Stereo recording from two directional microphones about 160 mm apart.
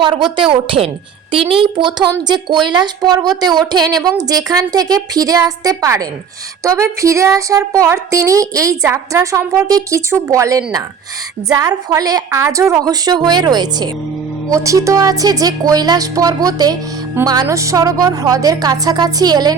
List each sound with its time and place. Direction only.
0.5 s a woman's voice: 35° right (ahead or behind)